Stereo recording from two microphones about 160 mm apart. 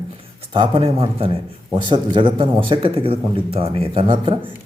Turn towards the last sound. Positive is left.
turn(degrees=-35)  # may be behind; listen again after turning